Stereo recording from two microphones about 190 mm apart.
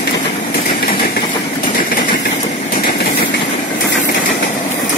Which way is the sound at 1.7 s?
45° left (ahead or behind).